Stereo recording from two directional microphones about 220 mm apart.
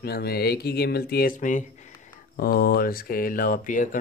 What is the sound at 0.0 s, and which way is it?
Speech, 45° left (ahead or behind).